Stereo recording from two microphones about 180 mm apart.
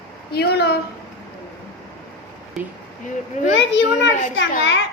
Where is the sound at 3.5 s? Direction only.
80° left.